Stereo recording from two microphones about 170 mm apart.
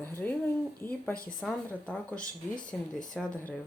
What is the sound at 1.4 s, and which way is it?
A woman's voice, 5° left (ahead or behind).